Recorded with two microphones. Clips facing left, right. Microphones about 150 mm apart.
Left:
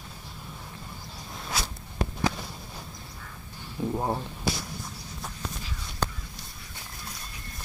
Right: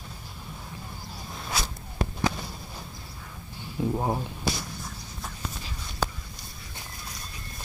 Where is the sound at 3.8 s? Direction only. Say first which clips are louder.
Right 1 dB; centre (ahead or behind).